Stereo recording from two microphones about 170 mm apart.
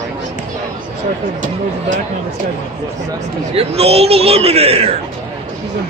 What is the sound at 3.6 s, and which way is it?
A man's voice, 35° right (ahead or behind).